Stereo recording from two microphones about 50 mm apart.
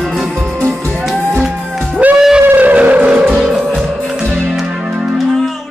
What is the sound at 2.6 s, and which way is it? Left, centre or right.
Vehicle, right.